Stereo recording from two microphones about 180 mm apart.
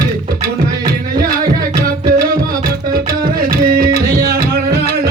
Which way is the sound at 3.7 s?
60° right (ahead or behind).